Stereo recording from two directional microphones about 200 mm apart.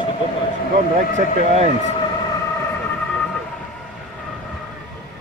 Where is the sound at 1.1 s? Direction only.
35° right (ahead or behind).